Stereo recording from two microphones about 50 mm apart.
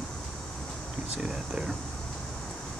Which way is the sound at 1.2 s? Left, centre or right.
Centre.